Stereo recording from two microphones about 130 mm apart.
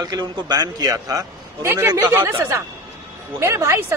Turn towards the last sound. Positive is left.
turn(degrees=-20)  # may be behind; listen again after turning